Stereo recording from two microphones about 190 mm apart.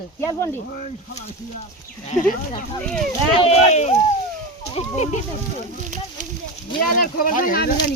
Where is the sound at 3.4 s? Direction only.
35° left (ahead or behind).